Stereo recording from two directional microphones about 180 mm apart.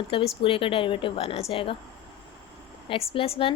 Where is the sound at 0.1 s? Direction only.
30° left (ahead or behind).